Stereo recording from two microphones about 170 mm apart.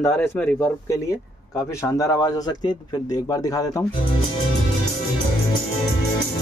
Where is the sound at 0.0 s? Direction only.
10° left (ahead or behind).